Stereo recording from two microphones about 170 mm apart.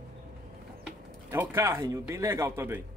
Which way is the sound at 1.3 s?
15° right (ahead or behind).